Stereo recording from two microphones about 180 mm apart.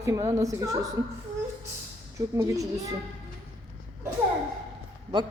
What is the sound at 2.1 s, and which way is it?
Speech, 15° right (ahead or behind).